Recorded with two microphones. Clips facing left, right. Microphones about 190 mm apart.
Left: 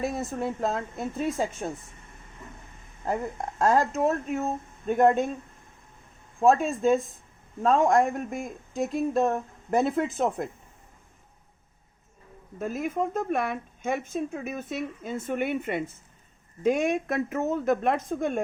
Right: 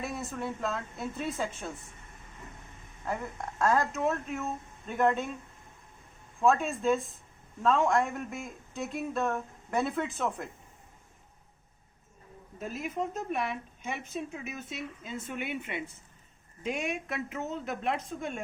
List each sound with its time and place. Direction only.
0.0 s speech: 45° left (ahead or behind)
3.0 s speech: 35° left (ahead or behind)
6.4 s speech: 35° left (ahead or behind)
9.0 s speech: 35° left (ahead or behind)
12.5 s speech: 50° left (ahead or behind)